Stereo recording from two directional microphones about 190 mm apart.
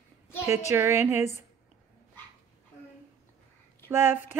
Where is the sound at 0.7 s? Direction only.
15° right (ahead or behind).